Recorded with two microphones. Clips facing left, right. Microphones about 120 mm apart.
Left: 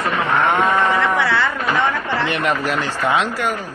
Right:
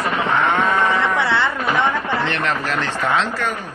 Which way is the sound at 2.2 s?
10° left (ahead or behind).